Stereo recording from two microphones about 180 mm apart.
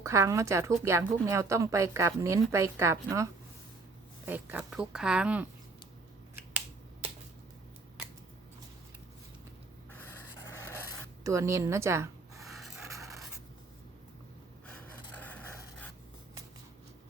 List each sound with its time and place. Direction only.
0.0 s a woman's voice: 15° right (ahead or behind)
4.3 s speech: 10° right (ahead or behind)
9.9 s writing: 10° left (ahead or behind)
11.2 s speech: 15° right (ahead or behind)
12.5 s a sound: centre (ahead or behind)
12.9 s writing: 15° right (ahead or behind)
15.2 s a sound: 10° left (ahead or behind)